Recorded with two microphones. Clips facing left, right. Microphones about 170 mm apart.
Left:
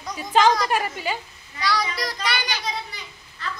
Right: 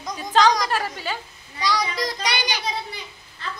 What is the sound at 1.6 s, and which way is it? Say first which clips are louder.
A child's voice: right 1 dB; 15° right (ahead or behind).